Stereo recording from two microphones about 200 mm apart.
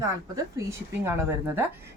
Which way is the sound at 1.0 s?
10° right (ahead or behind).